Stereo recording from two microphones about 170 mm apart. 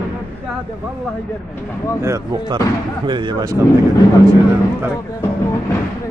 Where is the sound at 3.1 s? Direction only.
25° right (ahead or behind).